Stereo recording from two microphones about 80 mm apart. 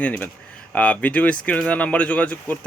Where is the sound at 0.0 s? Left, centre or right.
Centre.